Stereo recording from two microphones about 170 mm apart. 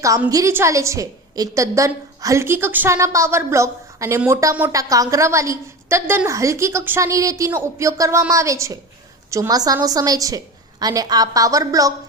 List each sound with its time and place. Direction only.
0.0 s a woman's voice: 20° right (ahead or behind)